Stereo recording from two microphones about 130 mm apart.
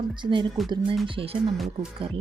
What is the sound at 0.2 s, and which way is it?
Speech, 40° right (ahead or behind).